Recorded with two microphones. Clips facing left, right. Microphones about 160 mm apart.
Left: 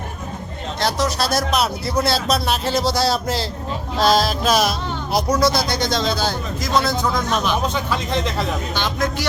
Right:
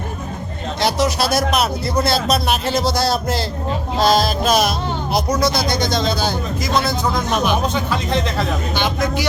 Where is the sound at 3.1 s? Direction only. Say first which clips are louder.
Right 1 dB; 55° right (ahead or behind).